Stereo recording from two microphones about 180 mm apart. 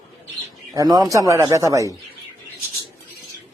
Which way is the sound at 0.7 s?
20° right (ahead or behind).